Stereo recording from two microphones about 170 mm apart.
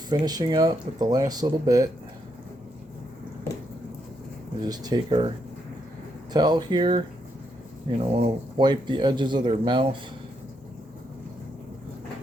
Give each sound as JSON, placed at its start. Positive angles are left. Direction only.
{"t": 0.1, "sound": "speech", "side_deg": -25}
{"t": 4.6, "sound": "speech", "side_deg": -25}
{"t": 6.3, "sound": "speech", "side_deg": -25}